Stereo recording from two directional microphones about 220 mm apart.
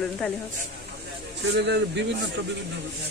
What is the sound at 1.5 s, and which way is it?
Speech, 50° right (ahead or behind).